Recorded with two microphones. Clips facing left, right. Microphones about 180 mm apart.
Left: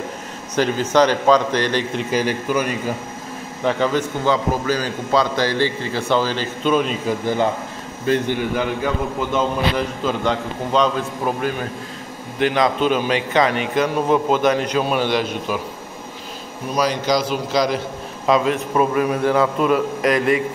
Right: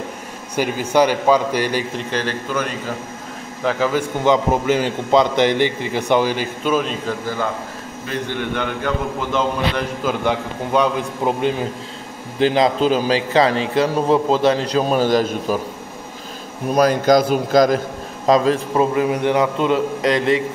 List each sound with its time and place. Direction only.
0.6 s a man's voice: 10° right (ahead or behind)
2.0 s a man's voice: 10° left (ahead or behind)
3.6 s a man's voice: 5° right (ahead or behind)
4.2 s a man's voice: 20° right (ahead or behind); by 7.0 s centre (ahead or behind)
7.1 s a man's voice: 20° left (ahead or behind)
8.4 s a man's voice: 5° left (ahead or behind)
10.0 s a man's voice: 10° right (ahead or behind)
12.4 s a man's voice: 30° right (ahead or behind)
16.7 s a man's voice: 50° right (ahead or behind); by 20.4 s 25° right (ahead or behind)